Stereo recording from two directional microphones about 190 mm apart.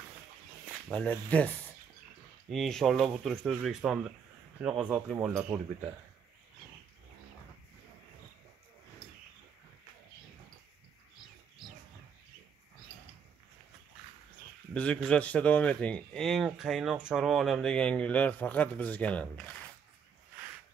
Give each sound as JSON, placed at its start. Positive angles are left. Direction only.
{"t": 0.8, "sound": "speech", "side_deg": 5}
{"t": 2.5, "sound": "speech", "side_deg": 0}
{"t": 14.7, "sound": "speech", "side_deg": 5}